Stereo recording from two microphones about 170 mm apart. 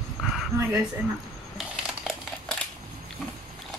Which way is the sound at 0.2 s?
5° right (ahead or behind).